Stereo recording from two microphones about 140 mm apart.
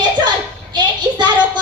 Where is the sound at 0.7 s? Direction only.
30° right (ahead or behind).